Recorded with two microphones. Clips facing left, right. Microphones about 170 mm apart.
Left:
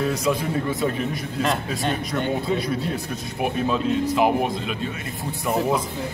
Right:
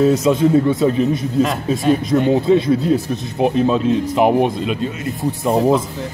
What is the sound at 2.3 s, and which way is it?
Speech, 25° right (ahead or behind).